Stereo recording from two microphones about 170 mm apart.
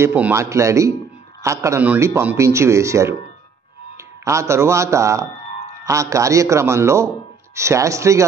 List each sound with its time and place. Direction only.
0.0 s speech: 10° right (ahead or behind)
4.2 s speech: 15° right (ahead or behind)